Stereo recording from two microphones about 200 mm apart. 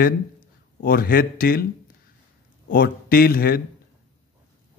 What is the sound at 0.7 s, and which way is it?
Speech, 45° left (ahead or behind).